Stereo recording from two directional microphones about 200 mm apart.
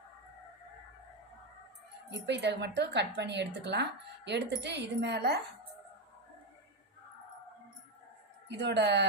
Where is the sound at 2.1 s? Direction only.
60° right (ahead or behind).